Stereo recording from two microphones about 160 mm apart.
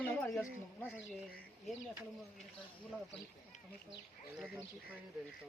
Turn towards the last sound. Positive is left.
turn(degrees=-5)  # may be behind; listen again after turning